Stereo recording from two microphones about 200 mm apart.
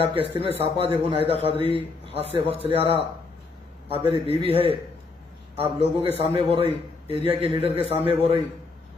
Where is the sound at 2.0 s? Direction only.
30° right (ahead or behind).